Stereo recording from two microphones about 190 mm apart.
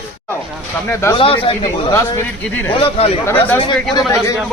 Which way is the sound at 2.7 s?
30° left (ahead or behind).